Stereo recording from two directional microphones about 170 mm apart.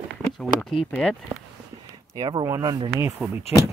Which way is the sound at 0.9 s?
5° left (ahead or behind).